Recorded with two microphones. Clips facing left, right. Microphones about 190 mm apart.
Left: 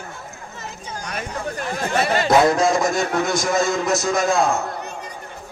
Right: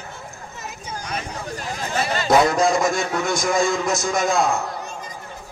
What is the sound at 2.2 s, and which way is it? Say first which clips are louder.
A man's voice: even; centre (ahead or behind).